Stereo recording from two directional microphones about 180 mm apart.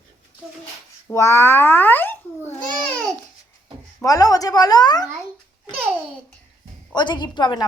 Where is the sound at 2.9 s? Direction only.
Centre (ahead or behind).